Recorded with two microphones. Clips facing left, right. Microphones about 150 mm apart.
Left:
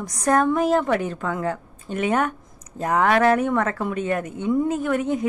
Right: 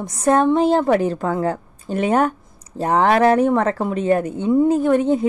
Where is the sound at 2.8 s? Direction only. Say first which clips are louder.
Right 3 dB; 30° right (ahead or behind).